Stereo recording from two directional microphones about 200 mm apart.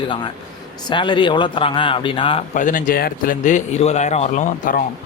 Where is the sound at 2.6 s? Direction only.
40° left (ahead or behind).